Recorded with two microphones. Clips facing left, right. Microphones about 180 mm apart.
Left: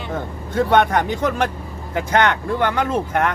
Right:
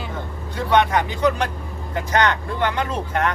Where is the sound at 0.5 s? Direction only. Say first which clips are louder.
Left 2 dB; 50° left (ahead or behind).